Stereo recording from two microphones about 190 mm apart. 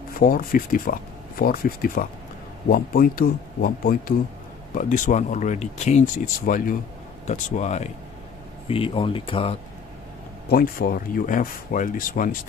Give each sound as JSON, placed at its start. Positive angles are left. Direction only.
{"t": 0.2, "sound": "speech", "side_deg": 50}
{"t": 10.5, "sound": "speech", "side_deg": 50}